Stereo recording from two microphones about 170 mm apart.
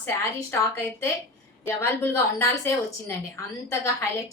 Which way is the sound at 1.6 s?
15° left (ahead or behind).